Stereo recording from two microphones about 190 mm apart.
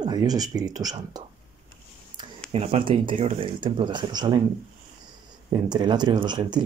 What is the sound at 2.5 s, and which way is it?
Speech, 30° right (ahead or behind).